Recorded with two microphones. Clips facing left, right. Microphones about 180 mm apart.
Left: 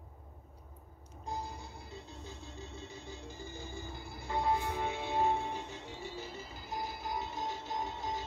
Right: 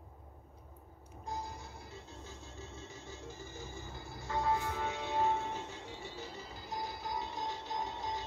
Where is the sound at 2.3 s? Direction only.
15° left (ahead or behind).